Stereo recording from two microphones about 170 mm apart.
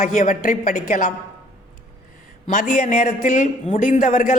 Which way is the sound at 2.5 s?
55° left (ahead or behind).